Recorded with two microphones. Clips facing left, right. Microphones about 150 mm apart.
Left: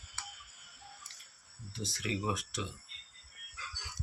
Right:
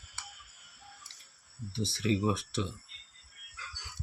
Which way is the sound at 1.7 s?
30° right (ahead or behind).